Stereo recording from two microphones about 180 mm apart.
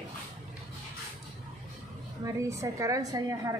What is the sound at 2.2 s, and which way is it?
A woman's voice, 15° right (ahead or behind).